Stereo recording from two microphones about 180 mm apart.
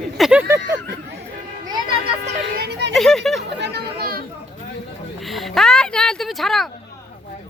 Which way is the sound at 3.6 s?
65° right (ahead or behind).